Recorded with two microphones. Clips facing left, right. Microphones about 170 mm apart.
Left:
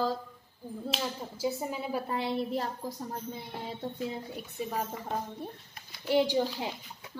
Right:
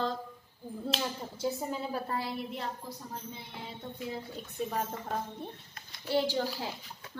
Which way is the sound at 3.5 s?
40° left (ahead or behind).